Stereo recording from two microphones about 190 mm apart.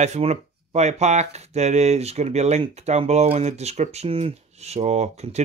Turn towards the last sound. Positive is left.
turn(degrees=-35)  # may be behind; listen again after turning